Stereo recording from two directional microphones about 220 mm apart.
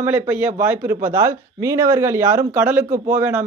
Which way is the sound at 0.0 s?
10° right (ahead or behind).